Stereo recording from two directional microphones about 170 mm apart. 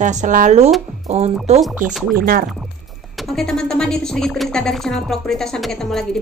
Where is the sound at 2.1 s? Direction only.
60° right (ahead or behind).